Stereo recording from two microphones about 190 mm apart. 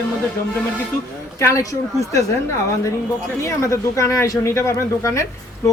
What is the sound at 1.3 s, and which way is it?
Speech, 15° left (ahead or behind).